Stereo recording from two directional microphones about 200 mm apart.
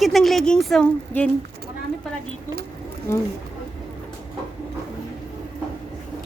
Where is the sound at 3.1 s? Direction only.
15° left (ahead or behind).